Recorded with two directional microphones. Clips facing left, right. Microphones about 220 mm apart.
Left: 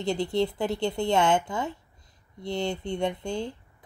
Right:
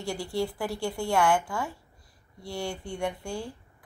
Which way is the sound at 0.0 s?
20° left (ahead or behind).